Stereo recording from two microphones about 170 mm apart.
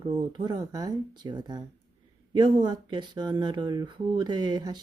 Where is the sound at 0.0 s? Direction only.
25° right (ahead or behind).